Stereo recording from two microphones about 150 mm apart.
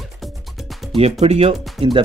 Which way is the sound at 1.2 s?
40° right (ahead or behind).